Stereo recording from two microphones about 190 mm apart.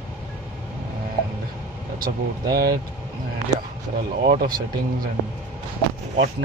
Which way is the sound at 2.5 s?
55° right (ahead or behind).